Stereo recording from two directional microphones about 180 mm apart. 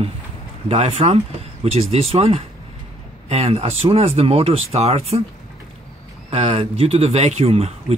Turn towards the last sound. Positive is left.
turn(degrees=-35)  # may be behind; listen again after turning